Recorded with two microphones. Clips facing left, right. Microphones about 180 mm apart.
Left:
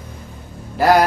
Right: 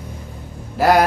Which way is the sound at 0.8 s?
Centre (ahead or behind).